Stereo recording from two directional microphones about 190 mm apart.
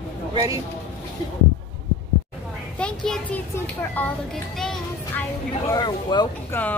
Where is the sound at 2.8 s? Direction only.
5° left (ahead or behind).